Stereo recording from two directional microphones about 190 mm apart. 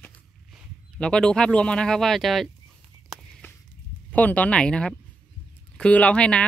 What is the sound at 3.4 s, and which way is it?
Walk, 10° left (ahead or behind).